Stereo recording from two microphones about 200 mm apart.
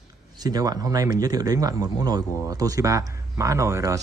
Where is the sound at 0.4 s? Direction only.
20° right (ahead or behind).